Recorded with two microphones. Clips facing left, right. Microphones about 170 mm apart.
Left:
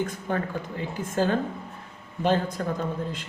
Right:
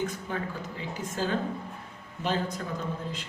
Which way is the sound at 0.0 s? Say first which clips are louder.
Left 4 dB; 55° left (ahead or behind).